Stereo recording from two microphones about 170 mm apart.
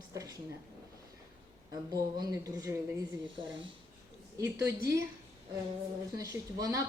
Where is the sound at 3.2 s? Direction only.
30° right (ahead or behind).